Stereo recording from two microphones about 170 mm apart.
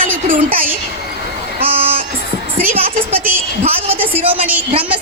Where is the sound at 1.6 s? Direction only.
60° right (ahead or behind).